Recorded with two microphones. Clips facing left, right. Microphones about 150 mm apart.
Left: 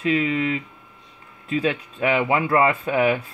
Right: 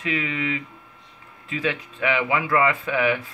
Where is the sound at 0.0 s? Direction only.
35° left (ahead or behind).